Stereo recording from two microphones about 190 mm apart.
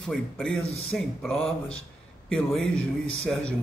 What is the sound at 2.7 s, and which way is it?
Speech, 90° left.